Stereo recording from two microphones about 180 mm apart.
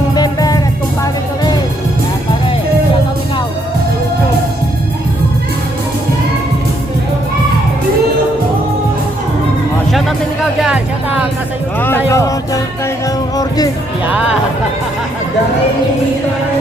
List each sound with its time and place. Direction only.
0.2 s music: 20° left (ahead or behind)
11.8 s a sound: 10° left (ahead or behind)
13.3 s music: 20° left (ahead or behind)